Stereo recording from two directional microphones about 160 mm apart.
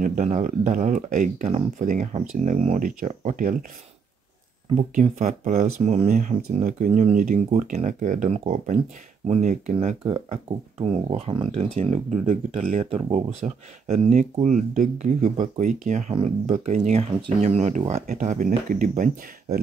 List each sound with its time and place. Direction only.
0.0 s speech: 50° right (ahead or behind)
4.7 s speech: 50° right (ahead or behind)
9.8 s speech: 35° right (ahead or behind); by 19.0 s 55° right (ahead or behind)